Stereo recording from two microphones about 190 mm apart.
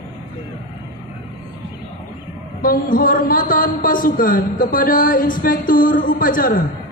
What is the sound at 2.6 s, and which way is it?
A man's voice, 50° left (ahead or behind).